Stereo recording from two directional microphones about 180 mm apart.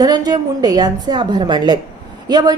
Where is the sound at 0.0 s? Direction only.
20° right (ahead or behind).